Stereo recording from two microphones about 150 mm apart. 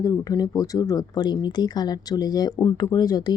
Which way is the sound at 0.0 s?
25° left (ahead or behind).